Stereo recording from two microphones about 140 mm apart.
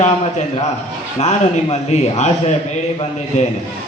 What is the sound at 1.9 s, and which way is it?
Speech, 55° left (ahead or behind).